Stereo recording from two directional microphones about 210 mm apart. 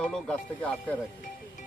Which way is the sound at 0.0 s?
5° left (ahead or behind).